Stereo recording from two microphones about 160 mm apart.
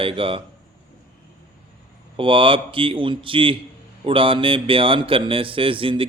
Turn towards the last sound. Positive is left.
turn(degrees=-35)  # may be behind; listen again after turning